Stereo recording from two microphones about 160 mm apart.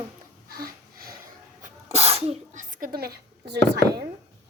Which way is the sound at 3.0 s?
75° right (ahead or behind).